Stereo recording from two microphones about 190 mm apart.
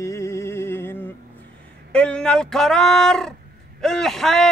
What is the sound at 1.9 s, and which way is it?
Speech, 5° left (ahead or behind).